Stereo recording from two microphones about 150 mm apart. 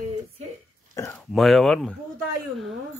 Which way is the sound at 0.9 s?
20° left (ahead or behind).